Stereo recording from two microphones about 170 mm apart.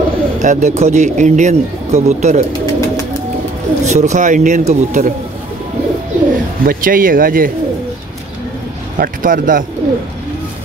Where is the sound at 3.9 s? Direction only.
45° right (ahead or behind).